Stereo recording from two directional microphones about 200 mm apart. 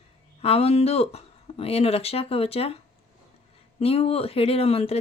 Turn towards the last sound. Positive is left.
turn(degrees=30)  # may be behind; listen again after turning